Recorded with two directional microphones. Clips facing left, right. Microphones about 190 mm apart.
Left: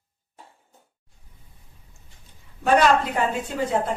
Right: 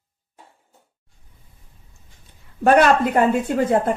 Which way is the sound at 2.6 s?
60° right (ahead or behind).